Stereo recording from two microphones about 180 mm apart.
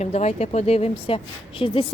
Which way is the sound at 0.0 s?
35° left (ahead or behind).